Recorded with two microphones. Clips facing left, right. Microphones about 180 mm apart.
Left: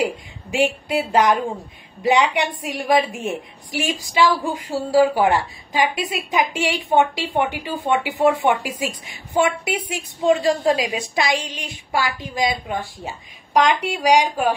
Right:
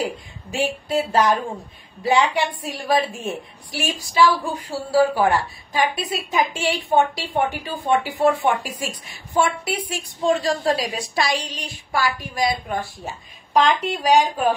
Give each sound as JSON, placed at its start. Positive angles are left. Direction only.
{"t": 0.5, "sound": "a woman's voice", "side_deg": 20}